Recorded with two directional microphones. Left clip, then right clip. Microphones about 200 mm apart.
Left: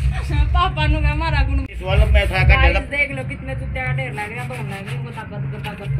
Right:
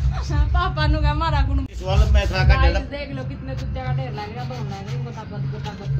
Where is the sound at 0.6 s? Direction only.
30° right (ahead or behind).